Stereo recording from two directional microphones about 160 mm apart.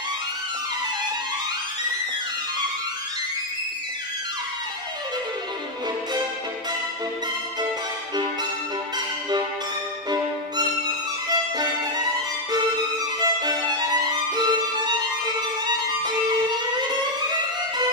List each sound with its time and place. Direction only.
11.2 s music: 25° right (ahead or behind)